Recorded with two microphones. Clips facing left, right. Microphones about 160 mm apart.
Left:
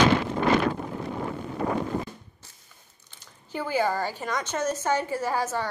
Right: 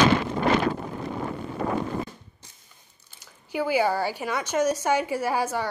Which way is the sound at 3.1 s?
10° right (ahead or behind).